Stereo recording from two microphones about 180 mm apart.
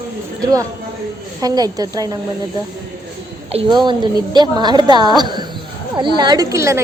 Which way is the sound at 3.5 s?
30° right (ahead or behind).